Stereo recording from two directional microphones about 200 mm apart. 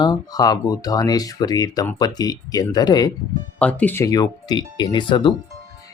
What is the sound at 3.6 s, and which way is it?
Speech, 5° left (ahead or behind).